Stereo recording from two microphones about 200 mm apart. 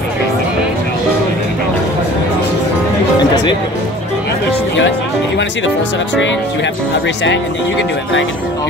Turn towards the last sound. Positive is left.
turn(degrees=65)  # may be behind; listen again after turning